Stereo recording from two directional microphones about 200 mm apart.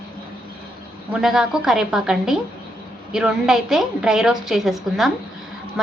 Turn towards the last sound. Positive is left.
turn(degrees=0)  # may be behind; listen again after turning